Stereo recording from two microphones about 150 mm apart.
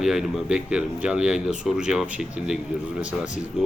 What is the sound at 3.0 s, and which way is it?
Speech, 55° left (ahead or behind).